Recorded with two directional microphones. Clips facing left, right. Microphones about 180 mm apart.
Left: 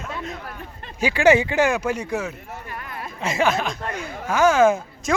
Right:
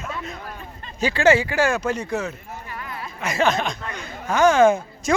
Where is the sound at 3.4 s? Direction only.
5° left (ahead or behind).